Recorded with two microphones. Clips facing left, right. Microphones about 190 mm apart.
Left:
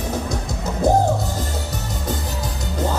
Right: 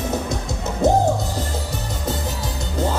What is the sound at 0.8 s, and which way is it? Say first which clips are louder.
Music: even; 25° right (ahead or behind).